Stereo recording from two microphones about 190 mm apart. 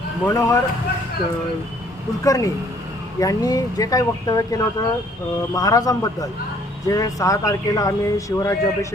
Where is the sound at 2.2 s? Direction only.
20° left (ahead or behind).